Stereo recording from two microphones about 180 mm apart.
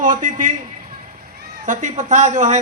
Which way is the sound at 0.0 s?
45° right (ahead or behind).